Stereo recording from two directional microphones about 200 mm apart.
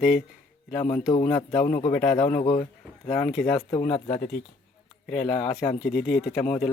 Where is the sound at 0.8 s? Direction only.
35° left (ahead or behind).